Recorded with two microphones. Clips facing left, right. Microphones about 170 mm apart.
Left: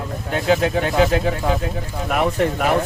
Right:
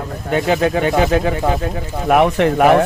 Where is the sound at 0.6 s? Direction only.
75° right (ahead or behind).